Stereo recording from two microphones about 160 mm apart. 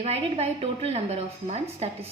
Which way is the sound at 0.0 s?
40° right (ahead or behind).